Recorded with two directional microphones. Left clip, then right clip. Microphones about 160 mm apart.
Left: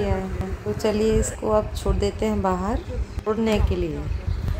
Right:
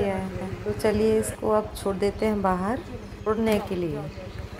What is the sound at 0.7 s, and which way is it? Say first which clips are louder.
A woman's voice: left 1 dB; 10° right (ahead or behind).